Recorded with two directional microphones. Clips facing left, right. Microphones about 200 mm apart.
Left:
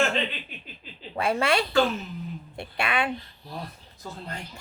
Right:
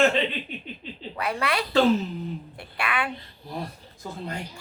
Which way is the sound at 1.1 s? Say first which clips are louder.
Left 4 dB; 25° left (ahead or behind).